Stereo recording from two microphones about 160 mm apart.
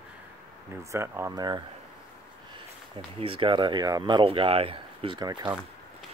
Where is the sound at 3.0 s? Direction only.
35° right (ahead or behind).